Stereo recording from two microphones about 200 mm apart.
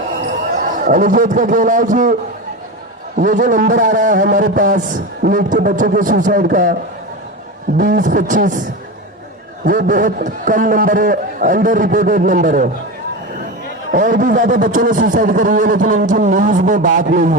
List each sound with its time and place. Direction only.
0.6 s a man's voice: 40° right (ahead or behind)
3.2 s a man's voice: 40° right (ahead or behind)
7.8 s a man's voice: 40° right (ahead or behind)
9.6 s a man's voice: 45° right (ahead or behind)
13.9 s a man's voice: 40° right (ahead or behind)